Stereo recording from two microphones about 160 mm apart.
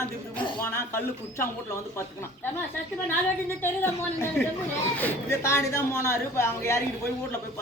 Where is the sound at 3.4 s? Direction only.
15° left (ahead or behind).